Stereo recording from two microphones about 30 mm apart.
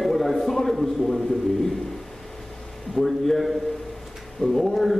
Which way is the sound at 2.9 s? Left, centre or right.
Centre.